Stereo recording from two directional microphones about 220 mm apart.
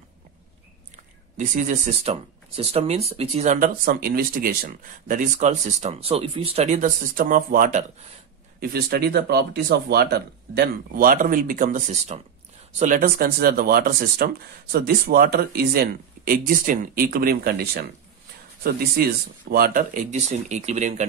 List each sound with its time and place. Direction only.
1.3 s speech: 35° right (ahead or behind)